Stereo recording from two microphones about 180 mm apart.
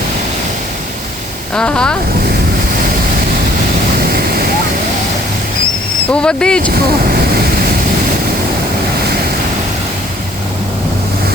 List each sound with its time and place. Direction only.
1.5 s speech: 5° left (ahead or behind)
6.1 s speech: 5° left (ahead or behind)
6.7 s speech: 55° right (ahead or behind)